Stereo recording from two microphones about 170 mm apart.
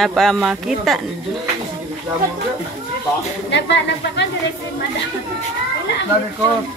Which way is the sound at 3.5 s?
90° left.